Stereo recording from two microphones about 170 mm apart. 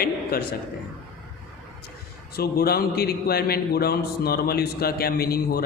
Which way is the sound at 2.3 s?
65° left (ahead or behind).